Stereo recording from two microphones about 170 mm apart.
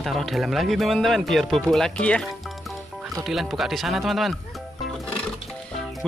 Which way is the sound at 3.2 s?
Centre (ahead or behind).